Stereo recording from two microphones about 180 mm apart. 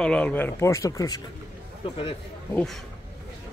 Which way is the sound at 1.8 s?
30° left (ahead or behind).